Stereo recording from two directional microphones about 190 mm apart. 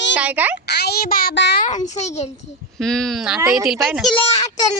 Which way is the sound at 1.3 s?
70° left (ahead or behind).